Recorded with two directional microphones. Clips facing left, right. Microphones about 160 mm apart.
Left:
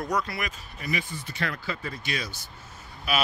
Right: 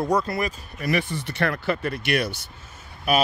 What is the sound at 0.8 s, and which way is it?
Speech, 70° right (ahead or behind).